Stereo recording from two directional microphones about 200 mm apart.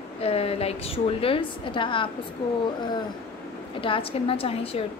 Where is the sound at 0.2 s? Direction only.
30° left (ahead or behind).